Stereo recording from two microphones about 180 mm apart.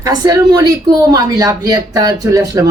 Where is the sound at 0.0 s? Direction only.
20° right (ahead or behind).